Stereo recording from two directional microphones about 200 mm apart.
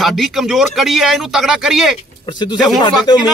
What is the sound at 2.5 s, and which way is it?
Speech, centre (ahead or behind).